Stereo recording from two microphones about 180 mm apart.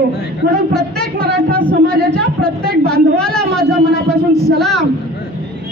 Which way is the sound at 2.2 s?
55° right (ahead or behind).